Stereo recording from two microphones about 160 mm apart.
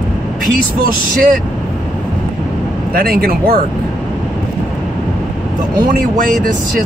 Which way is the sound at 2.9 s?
70° right (ahead or behind).